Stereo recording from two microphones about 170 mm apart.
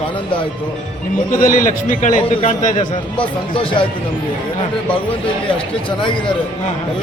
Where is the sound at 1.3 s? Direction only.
50° left (ahead or behind).